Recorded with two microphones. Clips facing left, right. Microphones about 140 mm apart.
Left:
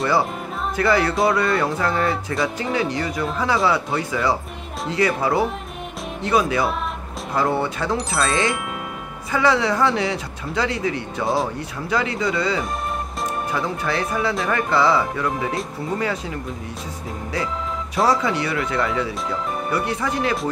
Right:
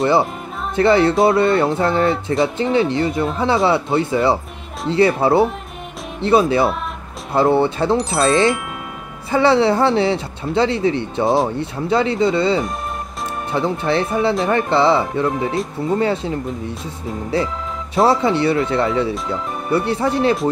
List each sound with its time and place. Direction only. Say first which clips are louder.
0.7 s speech: right 6 dB; 25° right (ahead or behind)